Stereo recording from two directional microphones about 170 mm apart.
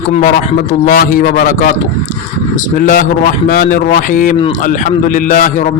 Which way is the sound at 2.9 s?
55° left (ahead or behind).